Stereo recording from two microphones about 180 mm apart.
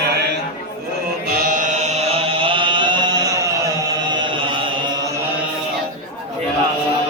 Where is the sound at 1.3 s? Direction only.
55° right (ahead or behind); by 4.6 s 25° right (ahead or behind).